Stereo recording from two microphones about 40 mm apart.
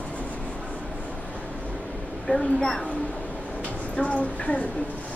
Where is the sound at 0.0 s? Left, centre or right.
Left.